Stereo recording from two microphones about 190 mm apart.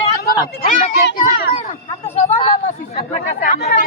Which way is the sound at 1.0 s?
55° left (ahead or behind).